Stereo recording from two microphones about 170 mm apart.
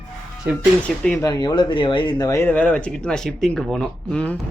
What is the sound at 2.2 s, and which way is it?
Speech, 15° left (ahead or behind).